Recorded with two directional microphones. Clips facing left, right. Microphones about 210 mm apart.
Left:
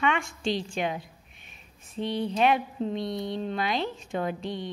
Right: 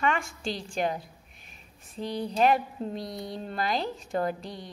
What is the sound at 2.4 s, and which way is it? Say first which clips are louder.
A woman's voice: right 1 dB; 5° right (ahead or behind).